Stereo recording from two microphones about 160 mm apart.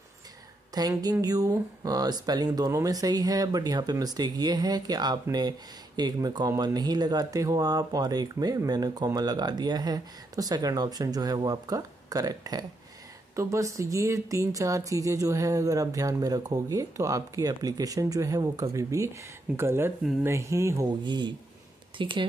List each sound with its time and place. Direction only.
0.7 s speech: 25° right (ahead or behind)